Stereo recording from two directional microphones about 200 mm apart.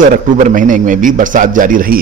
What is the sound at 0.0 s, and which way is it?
A man's voice, 40° right (ahead or behind).